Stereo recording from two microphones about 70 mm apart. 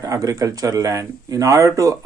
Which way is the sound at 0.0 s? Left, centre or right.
Right.